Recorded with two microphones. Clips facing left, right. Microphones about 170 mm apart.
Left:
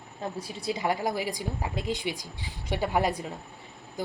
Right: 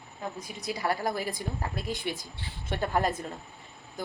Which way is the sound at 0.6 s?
25° left (ahead or behind).